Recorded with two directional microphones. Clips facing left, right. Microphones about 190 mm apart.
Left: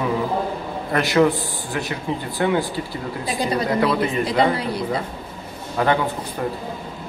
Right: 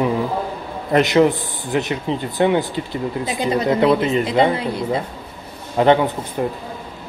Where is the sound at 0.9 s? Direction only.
20° right (ahead or behind).